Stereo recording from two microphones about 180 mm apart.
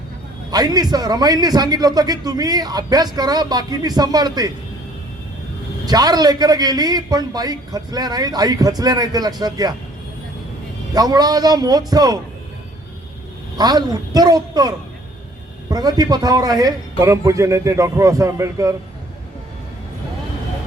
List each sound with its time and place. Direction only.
0.5 s a man's voice: 20° right (ahead or behind)
5.8 s a man's voice: 20° right (ahead or behind)
10.9 s a man's voice: 20° right (ahead or behind)
13.6 s a man's voice: 20° right (ahead or behind)
15.7 s a man's voice: 20° right (ahead or behind)